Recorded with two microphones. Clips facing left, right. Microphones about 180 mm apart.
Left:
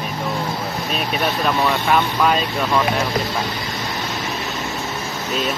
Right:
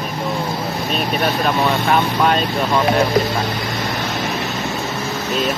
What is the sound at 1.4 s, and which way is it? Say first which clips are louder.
Speech: right 2 dB; 35° right (ahead or behind).